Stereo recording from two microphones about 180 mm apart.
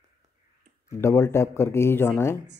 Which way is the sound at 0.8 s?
15° left (ahead or behind).